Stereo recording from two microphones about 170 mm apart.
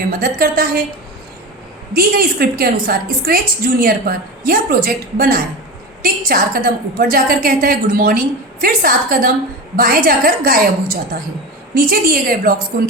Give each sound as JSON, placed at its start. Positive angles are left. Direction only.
{"t": 0.2, "sound": "a woman's voice", "side_deg": -55}
{"t": 1.9, "sound": "a woman's voice", "side_deg": -60}